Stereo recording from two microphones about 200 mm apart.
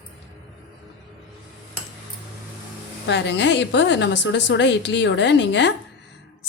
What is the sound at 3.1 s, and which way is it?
A woman's voice, 60° left (ahead or behind).